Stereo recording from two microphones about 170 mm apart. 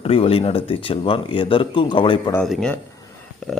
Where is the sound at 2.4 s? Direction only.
5° left (ahead or behind).